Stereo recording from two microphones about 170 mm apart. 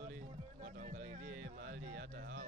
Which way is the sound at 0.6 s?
55° right (ahead or behind).